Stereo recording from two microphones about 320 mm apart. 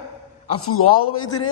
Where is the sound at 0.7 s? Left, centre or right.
Left.